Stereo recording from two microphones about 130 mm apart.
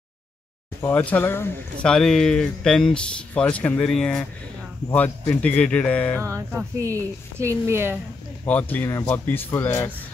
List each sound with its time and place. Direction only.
0.7 s speech: 15° left (ahead or behind)
1.9 s speech: 5° left (ahead or behind)
6.2 s a woman's voice: 20° right (ahead or behind)
8.5 s speech: 10° left (ahead or behind)